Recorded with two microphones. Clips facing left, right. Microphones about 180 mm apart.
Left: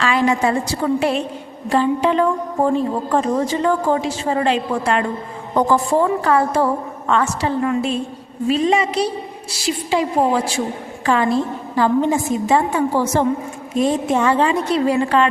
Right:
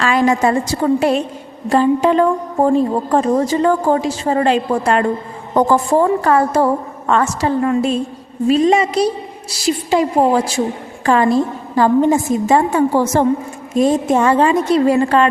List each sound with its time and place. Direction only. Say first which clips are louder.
0.0 s a woman's voice: right 3 dB; 45° right (ahead or behind)